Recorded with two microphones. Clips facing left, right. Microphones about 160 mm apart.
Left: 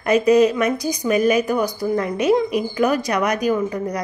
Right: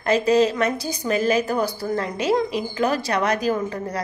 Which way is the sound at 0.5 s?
15° left (ahead or behind).